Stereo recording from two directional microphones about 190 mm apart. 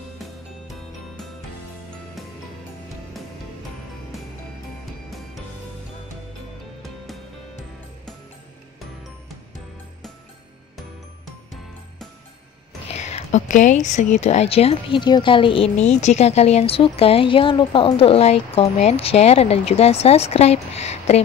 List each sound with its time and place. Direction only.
0.2 s music: centre (ahead or behind)
4.1 s music: centre (ahead or behind)
12.8 s a woman's voice: 35° left (ahead or behind)